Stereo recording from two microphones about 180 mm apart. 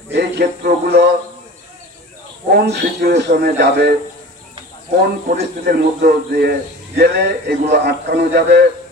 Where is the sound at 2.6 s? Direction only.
65° right (ahead or behind).